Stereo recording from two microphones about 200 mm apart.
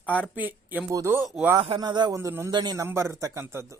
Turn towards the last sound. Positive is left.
turn(degrees=-10)  # may be behind; listen again after turning